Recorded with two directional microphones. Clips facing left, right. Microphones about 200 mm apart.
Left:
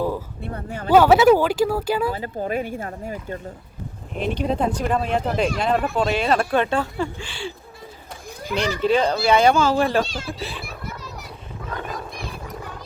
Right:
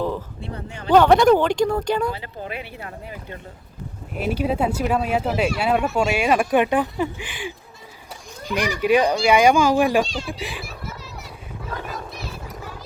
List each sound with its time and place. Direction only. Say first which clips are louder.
0.4 s speech: left 3 dB; 50° left (ahead or behind)
0.9 s speech: even; 5° left (ahead or behind)
2.1 s speech: left 7 dB; 45° left (ahead or behind)
4.1 s speech: right 1 dB; 5° right (ahead or behind)
8.5 s speech: right 1 dB; 10° right (ahead or behind)
10.0 s speech: right 1 dB; centre (ahead or behind)
10.3 s speech: even; 15° right (ahead or behind)